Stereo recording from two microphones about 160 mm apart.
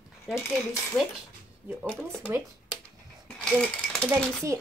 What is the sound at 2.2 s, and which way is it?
Speech, 10° right (ahead or behind).